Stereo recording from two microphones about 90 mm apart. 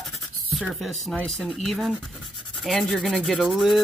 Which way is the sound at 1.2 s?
15° left (ahead or behind).